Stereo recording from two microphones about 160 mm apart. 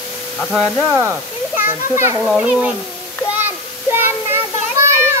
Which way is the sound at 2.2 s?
5° right (ahead or behind).